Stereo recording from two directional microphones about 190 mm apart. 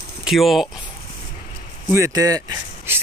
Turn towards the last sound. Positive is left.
turn(degrees=-10)  # may be behind; listen again after turning